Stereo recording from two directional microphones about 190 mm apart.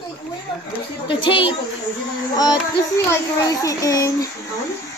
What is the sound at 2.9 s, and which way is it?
A child's voice, 15° left (ahead or behind).